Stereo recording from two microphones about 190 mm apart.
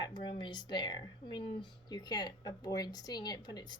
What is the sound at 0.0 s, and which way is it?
A woman's voice, 25° left (ahead or behind).